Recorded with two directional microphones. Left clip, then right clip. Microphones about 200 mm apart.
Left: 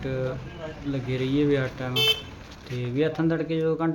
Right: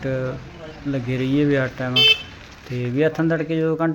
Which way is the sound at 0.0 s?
20° right (ahead or behind).